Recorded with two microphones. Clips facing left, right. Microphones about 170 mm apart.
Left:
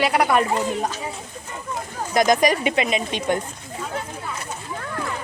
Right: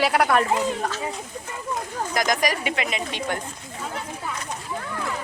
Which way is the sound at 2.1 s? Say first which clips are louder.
Left 7 dB; 25° left (ahead or behind).